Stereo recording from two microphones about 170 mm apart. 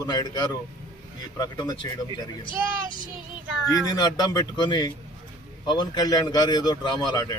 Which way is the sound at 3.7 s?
25° left (ahead or behind).